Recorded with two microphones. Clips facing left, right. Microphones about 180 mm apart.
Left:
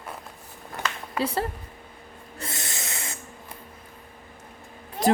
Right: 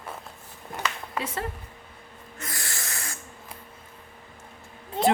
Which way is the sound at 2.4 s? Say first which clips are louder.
Left 2 dB; 25° left (ahead or behind).